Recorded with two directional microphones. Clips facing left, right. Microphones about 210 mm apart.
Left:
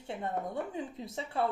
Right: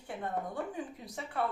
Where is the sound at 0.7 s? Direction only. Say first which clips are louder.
Left 3 dB; 25° left (ahead or behind).